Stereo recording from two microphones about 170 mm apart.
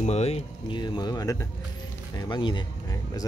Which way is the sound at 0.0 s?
40° left (ahead or behind).